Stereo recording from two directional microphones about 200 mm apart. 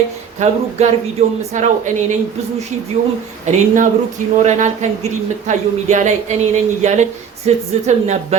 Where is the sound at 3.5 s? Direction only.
40° right (ahead or behind).